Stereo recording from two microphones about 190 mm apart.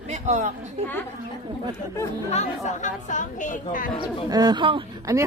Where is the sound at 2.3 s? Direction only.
40° left (ahead or behind).